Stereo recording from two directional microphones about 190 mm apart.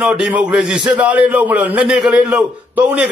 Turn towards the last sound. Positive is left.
turn(degrees=-10)  # may be behind; listen again after turning